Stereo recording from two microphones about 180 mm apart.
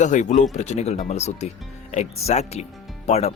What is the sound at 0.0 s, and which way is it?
Speech, 45° left (ahead or behind).